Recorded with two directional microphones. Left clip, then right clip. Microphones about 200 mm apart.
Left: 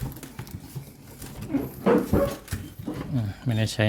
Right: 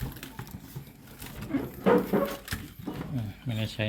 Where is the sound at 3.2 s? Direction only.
35° left (ahead or behind).